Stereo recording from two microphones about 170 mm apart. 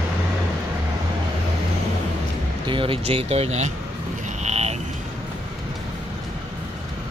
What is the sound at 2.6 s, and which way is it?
Speech, 30° right (ahead or behind).